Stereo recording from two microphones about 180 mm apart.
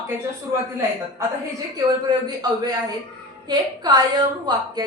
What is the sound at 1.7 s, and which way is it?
A woman's voice, 20° right (ahead or behind).